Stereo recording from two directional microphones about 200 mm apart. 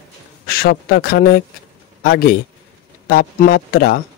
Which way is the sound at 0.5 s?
50° left (ahead or behind).